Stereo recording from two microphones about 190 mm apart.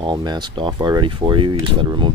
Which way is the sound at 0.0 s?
20° right (ahead or behind).